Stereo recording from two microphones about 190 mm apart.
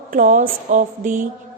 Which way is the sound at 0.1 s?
45° right (ahead or behind).